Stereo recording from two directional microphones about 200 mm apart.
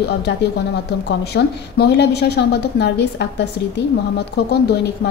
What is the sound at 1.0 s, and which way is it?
A woman's voice, 55° left (ahead or behind).